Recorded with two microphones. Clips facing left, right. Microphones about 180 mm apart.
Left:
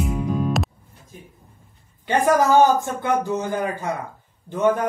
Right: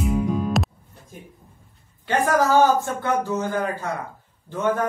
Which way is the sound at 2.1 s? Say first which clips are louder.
Left 2 dB; 15° left (ahead or behind).